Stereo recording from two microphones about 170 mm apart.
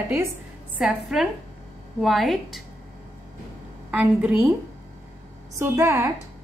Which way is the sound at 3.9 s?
10° right (ahead or behind).